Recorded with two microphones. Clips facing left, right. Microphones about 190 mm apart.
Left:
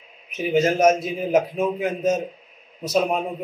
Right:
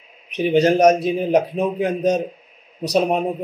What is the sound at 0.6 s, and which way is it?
A man's voice, 35° right (ahead or behind).